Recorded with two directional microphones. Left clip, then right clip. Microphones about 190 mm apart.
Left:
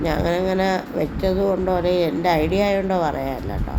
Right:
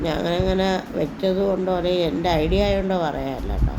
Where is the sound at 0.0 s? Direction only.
10° left (ahead or behind).